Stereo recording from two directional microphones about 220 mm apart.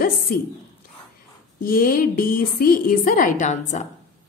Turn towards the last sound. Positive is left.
turn(degrees=35)  # may be behind; listen again after turning